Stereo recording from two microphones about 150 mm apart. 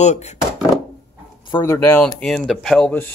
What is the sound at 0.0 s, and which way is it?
Speech, 50° left (ahead or behind).